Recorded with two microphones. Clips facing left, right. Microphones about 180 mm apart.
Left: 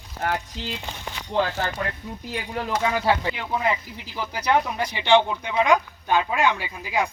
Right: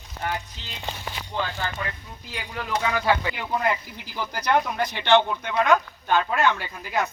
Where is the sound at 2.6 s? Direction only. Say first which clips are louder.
Left 1 dB; 30° left (ahead or behind).